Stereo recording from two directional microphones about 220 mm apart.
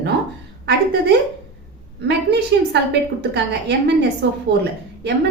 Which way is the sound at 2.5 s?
50° right (ahead or behind).